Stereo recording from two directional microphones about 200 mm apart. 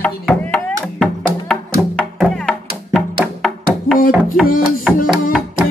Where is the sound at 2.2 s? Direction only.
Centre (ahead or behind).